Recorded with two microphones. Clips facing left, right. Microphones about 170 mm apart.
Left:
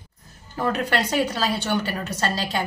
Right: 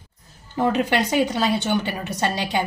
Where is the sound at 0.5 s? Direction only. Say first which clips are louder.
Right 3 dB; 15° right (ahead or behind).